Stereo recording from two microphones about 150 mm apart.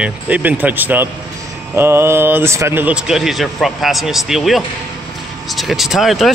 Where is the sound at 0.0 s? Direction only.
10° right (ahead or behind).